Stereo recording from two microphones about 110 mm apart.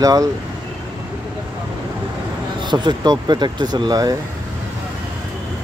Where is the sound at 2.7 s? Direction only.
40° right (ahead or behind).